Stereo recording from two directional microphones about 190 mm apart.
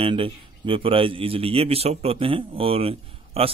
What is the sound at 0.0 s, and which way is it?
A man's voice, 30° right (ahead or behind).